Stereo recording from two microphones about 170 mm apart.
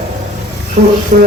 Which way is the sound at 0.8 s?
50° right (ahead or behind).